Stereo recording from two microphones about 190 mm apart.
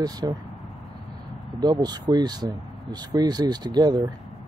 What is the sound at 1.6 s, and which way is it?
Speech, 20° right (ahead or behind).